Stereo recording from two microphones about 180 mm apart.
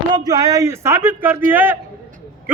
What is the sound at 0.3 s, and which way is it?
A man's voice, 20° right (ahead or behind).